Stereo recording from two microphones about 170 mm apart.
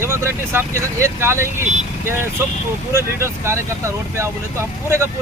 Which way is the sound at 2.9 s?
15° right (ahead or behind).